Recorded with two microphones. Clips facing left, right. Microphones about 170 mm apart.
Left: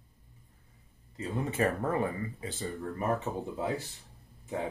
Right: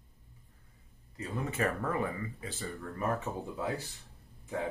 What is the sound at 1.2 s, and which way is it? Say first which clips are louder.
Speech: left 3 dB; 30° left (ahead or behind).